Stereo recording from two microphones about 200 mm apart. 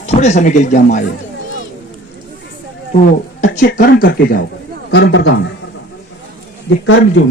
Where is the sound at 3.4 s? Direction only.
40° left (ahead or behind).